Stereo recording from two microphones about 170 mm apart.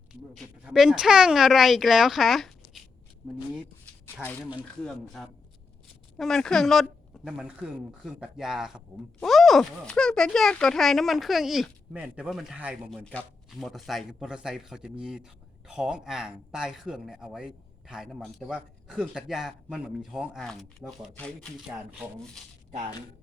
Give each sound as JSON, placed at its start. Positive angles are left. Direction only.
{"t": 0.1, "sound": "a man's voice", "side_deg": 0}
{"t": 4.0, "sound": "a man's voice", "side_deg": 15}